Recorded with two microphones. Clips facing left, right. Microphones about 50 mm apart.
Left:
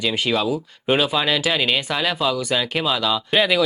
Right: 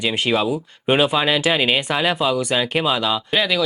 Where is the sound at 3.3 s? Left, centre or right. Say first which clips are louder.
Left 3 dB; centre.